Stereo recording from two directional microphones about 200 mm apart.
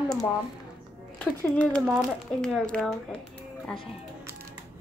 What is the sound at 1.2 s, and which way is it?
Speech, 5° left (ahead or behind).